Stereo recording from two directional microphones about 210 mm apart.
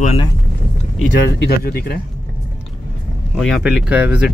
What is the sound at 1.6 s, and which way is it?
Speech, 45° left (ahead or behind).